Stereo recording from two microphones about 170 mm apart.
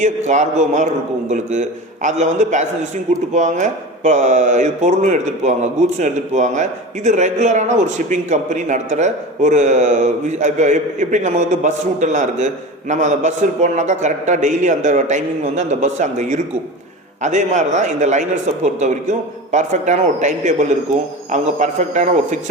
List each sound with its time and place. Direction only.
0.0 s a man's voice: 45° right (ahead or behind)
2.0 s a man's voice: 45° right (ahead or behind)